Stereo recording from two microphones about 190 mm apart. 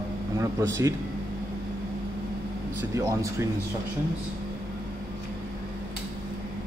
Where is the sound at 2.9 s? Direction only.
15° right (ahead or behind).